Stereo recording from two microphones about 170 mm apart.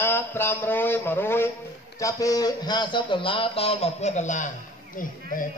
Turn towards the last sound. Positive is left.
turn(degrees=45)  # may be behind; listen again after turning